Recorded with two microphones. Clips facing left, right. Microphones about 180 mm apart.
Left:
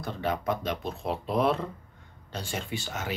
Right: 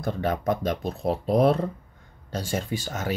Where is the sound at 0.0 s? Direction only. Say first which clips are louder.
Right 4 dB; 45° right (ahead or behind).